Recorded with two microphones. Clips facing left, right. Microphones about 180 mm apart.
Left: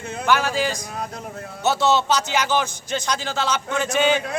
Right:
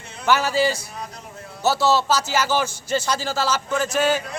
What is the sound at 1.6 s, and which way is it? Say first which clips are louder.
Speech: even; centre (ahead or behind).